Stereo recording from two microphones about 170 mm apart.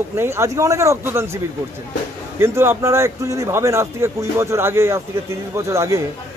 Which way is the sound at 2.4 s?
15° right (ahead or behind).